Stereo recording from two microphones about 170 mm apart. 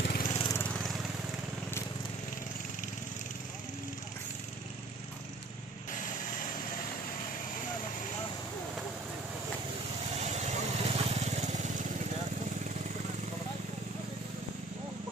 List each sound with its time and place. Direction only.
0.0 s lawn mower: 65° left (ahead or behind)
0.3 s lawn mower: 25° left (ahead or behind)
0.6 s lawn mower: 5° left (ahead or behind)
10.2 s vehicle: 40° right (ahead or behind)